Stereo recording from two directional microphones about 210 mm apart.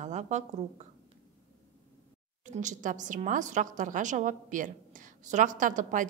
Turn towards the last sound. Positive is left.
turn(degrees=-40)  # may be behind; listen again after turning